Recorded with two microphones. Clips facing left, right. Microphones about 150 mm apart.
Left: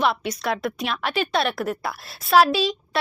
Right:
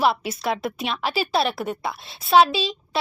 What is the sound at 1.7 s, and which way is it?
Speech, 20° right (ahead or behind).